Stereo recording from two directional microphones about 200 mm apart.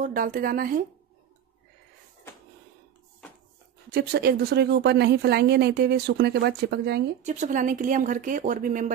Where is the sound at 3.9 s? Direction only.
50° right (ahead or behind).